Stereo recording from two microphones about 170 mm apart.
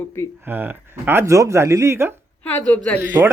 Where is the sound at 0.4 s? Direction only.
10° right (ahead or behind).